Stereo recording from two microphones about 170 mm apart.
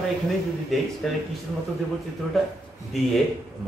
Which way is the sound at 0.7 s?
Centre (ahead or behind).